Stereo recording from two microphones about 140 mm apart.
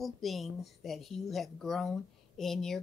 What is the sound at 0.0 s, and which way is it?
Speech, centre (ahead or behind).